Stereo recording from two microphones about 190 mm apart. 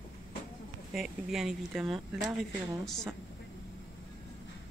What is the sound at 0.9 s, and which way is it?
Speech, centre (ahead or behind).